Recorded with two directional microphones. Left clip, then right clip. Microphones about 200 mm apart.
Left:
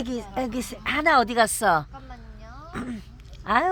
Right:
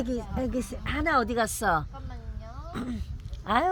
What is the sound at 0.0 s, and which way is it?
Speech, 25° left (ahead or behind).